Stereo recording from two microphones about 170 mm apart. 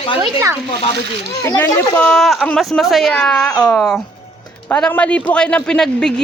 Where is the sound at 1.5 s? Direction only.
15° left (ahead or behind).